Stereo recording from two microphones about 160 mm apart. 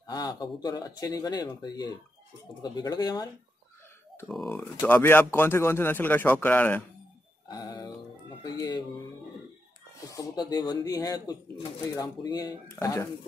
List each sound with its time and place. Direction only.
0.0 s speech: 25° left (ahead or behind)
4.3 s speech: centre (ahead or behind)
7.4 s speech: 25° left (ahead or behind)
10.1 s speech: 25° left (ahead or behind)